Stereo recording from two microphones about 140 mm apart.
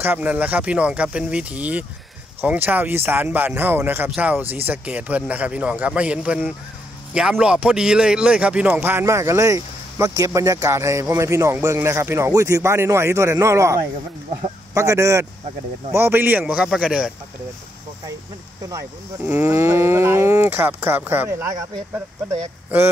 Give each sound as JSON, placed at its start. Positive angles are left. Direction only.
{"t": 0.0, "sound": "a man's voice", "side_deg": -10}
{"t": 18.7, "sound": "a man's voice", "side_deg": -20}